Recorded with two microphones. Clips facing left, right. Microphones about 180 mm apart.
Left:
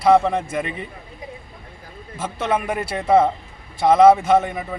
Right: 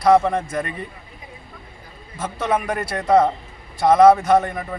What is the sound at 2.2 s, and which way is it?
Speech, 25° left (ahead or behind).